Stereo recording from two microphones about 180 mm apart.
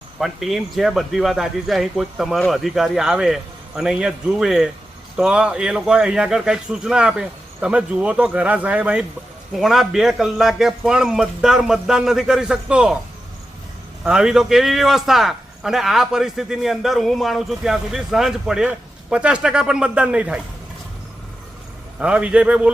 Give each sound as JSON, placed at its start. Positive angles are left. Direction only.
{"t": 0.2, "sound": "a man's voice", "side_deg": 0}
{"t": 14.0, "sound": "a man's voice", "side_deg": -5}
{"t": 21.9, "sound": "a man's voice", "side_deg": -5}